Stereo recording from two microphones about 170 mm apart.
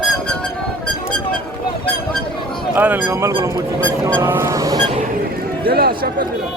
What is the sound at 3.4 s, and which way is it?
Speech, 20° right (ahead or behind).